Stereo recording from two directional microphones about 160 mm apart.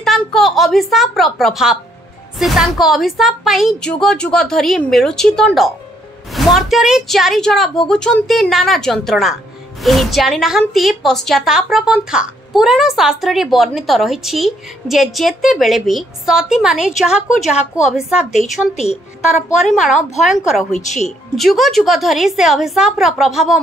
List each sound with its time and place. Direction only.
0.0 s speech: centre (ahead or behind)
18.3 s speech: 45° left (ahead or behind)
19.3 s speech: centre (ahead or behind)
20.8 s speech: 45° left (ahead or behind)
21.4 s speech: centre (ahead or behind)